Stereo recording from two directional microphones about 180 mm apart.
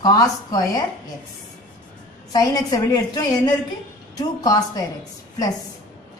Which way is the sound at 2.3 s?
20° left (ahead or behind).